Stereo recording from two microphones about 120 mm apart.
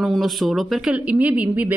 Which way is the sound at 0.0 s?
Centre (ahead or behind).